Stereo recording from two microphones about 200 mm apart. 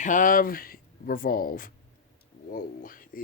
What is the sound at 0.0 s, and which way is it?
Speech, 40° left (ahead or behind).